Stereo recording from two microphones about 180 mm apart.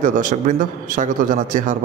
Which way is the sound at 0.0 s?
45° right (ahead or behind).